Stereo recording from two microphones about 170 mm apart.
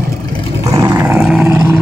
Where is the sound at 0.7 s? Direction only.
20° right (ahead or behind).